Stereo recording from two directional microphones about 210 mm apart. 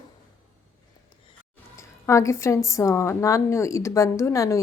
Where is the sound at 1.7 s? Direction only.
15° left (ahead or behind).